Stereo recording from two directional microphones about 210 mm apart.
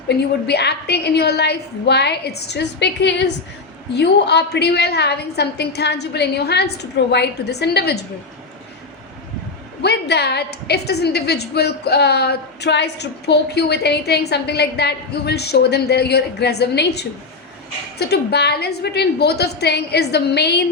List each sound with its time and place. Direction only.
0.1 s a woman's voice: 50° left (ahead or behind)
9.8 s a woman's voice: 50° left (ahead or behind)